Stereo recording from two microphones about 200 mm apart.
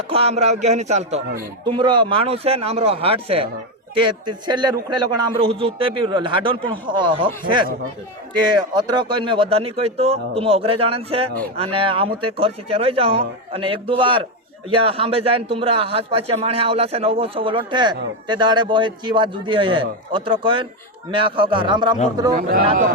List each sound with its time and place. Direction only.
0.1 s speech: 30° right (ahead or behind)
1.7 s a man's voice: 25° right (ahead or behind)
22.4 s a man's voice: 45° right (ahead or behind)